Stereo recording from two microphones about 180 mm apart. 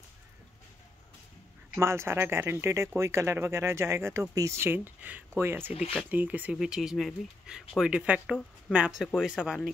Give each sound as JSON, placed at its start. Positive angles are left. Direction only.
{"t": 1.8, "sound": "speech", "side_deg": -15}
{"t": 5.7, "sound": "speech", "side_deg": 35}
{"t": 6.0, "sound": "speech", "side_deg": -10}